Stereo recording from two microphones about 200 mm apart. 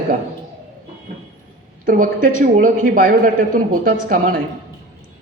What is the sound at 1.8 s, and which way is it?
A woman's voice, 45° right (ahead or behind).